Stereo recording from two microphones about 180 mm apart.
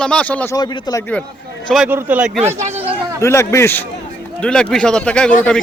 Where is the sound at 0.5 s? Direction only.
25° left (ahead or behind).